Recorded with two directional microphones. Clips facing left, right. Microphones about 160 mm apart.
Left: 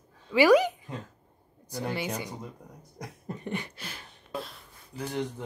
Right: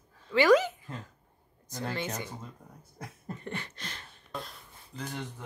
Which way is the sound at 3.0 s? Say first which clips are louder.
Left 3 dB; 15° left (ahead or behind).